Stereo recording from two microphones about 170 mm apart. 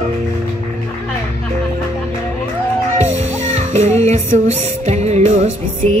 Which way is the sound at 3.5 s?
40° right (ahead or behind).